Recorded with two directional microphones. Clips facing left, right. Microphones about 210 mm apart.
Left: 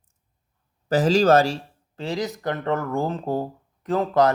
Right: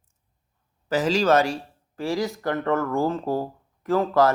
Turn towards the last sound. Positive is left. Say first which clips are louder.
# even
turn(degrees=20)  # may be behind; listen again after turning